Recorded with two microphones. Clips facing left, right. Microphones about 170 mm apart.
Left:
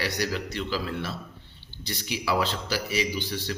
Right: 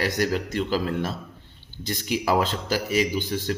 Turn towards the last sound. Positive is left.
turn(degrees=-45)  # may be behind; listen again after turning